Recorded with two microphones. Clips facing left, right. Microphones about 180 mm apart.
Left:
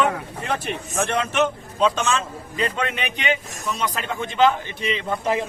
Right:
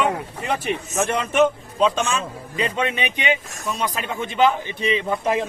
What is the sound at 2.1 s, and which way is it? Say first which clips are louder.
Speech: even; 15° right (ahead or behind).